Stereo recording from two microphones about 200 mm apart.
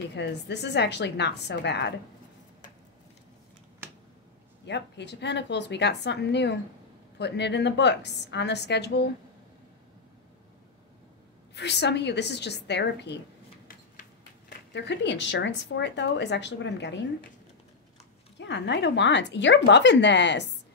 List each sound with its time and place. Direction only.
0.1 s speech: 60° left (ahead or behind)
4.6 s speech: 60° left (ahead or behind)
11.5 s speech: 60° left (ahead or behind)
14.7 s speech: 60° left (ahead or behind)
18.4 s speech: 60° left (ahead or behind)